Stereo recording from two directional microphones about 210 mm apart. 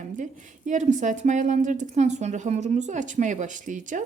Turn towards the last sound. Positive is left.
turn(degrees=-35)  # may be behind; listen again after turning